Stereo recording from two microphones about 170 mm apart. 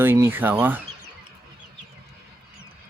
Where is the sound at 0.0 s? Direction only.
15° right (ahead or behind).